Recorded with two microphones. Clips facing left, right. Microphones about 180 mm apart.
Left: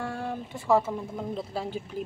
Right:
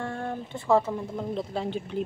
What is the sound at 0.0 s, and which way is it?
Speech, 5° left (ahead or behind).